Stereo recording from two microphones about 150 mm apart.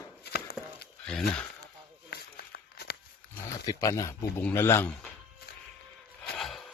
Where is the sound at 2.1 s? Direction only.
90° left.